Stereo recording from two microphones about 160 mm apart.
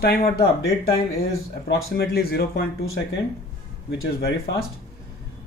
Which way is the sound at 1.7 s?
80° left.